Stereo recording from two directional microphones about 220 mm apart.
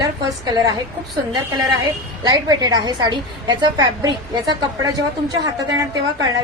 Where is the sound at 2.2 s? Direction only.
20° right (ahead or behind).